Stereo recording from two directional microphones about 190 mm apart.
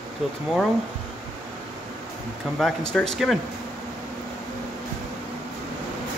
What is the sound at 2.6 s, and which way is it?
Speech, centre (ahead or behind).